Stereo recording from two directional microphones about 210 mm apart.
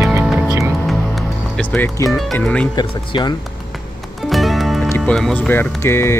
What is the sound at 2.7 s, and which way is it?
Speech, 20° left (ahead or behind).